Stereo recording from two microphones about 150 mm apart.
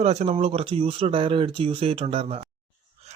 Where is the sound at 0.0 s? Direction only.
45° right (ahead or behind).